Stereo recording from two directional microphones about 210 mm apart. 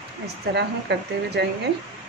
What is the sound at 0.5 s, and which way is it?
Speech, 55° right (ahead or behind).